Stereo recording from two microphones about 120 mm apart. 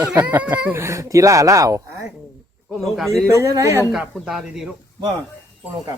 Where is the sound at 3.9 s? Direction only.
5° right (ahead or behind).